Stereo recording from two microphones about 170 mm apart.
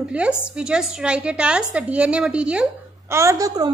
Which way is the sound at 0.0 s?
5° right (ahead or behind).